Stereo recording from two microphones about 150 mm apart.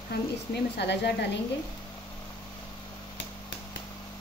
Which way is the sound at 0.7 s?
90° left.